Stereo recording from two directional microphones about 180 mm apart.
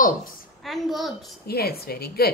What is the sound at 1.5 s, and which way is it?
Speech, 60° left (ahead or behind).